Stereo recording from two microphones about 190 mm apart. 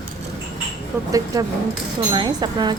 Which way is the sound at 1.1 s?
20° right (ahead or behind).